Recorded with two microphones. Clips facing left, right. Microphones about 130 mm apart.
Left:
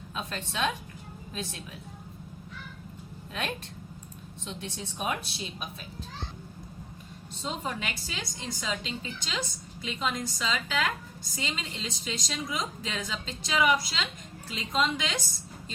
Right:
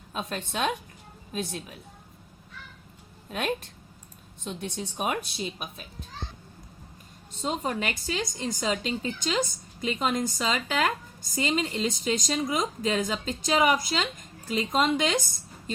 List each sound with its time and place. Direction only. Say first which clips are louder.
0.1 s a woman's voice: right 4 dB; 50° right (ahead or behind)
4.4 s a woman's voice: right 5 dB; 45° right (ahead or behind)
7.4 s a woman's voice: right 5 dB; 45° right (ahead or behind)